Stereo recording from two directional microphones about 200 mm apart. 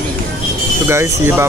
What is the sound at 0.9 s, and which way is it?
Speech, 10° right (ahead or behind).